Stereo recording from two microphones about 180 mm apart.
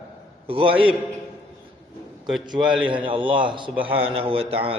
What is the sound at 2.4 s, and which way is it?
A man's voice, 25° right (ahead or behind).